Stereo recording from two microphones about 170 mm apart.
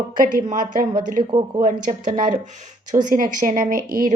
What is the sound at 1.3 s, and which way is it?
Speech, 25° right (ahead or behind).